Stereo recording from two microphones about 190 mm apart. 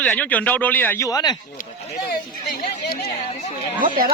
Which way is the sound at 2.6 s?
55° left (ahead or behind).